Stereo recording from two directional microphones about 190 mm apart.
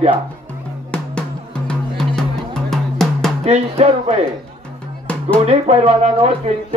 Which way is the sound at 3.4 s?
35° right (ahead or behind).